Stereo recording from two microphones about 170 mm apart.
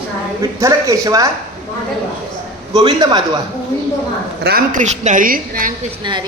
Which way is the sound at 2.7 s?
25° right (ahead or behind).